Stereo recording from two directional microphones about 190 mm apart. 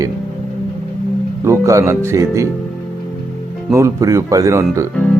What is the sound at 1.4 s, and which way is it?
Speech, 15° right (ahead or behind).